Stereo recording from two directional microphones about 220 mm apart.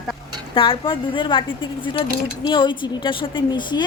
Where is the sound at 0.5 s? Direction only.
25° left (ahead or behind).